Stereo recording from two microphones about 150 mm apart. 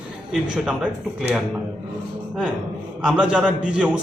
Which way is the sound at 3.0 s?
5° right (ahead or behind).